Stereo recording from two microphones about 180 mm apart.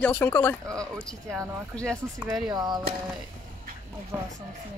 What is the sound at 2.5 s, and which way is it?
Speech, 25° right (ahead or behind).